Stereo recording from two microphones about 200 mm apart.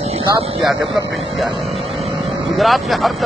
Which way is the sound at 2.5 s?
Centre (ahead or behind).